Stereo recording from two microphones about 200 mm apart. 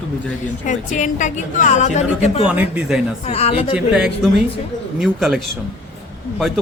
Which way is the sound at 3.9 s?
Centre (ahead or behind).